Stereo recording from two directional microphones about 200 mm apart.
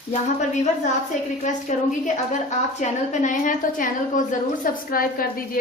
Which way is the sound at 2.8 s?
40° left (ahead or behind).